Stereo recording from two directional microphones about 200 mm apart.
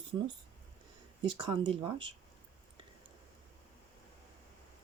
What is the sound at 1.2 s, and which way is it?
Speech, 25° right (ahead or behind).